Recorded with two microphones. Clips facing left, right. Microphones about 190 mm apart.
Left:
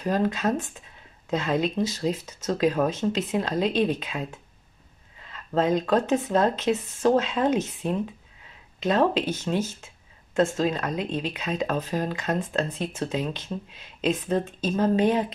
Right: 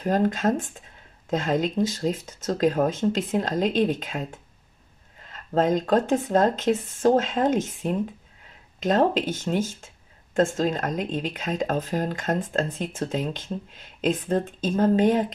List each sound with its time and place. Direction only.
0.0 s speech: 45° right (ahead or behind)
8.7 s speech: 45° right (ahead or behind)